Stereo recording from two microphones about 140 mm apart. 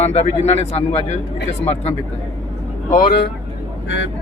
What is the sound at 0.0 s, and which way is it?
Speech, 50° left (ahead or behind).